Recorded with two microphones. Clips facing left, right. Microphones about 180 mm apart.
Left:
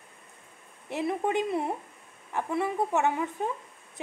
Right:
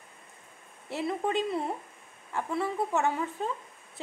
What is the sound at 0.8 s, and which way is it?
A woman's voice, 15° left (ahead or behind).